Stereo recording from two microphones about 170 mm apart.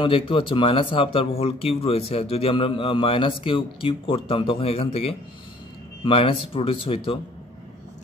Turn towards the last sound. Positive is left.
turn(degrees=35)  # may be behind; listen again after turning